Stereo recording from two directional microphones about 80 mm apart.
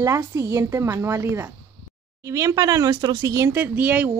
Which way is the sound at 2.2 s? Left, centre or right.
Right.